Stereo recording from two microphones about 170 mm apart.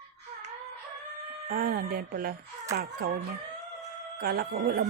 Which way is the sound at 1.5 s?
60° right (ahead or behind).